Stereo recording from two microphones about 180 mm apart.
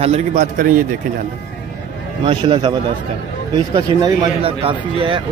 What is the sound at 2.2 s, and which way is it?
Speech, 30° right (ahead or behind).